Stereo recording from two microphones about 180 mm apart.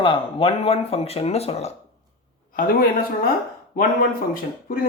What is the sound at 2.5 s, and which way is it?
Speech, 50° left (ahead or behind).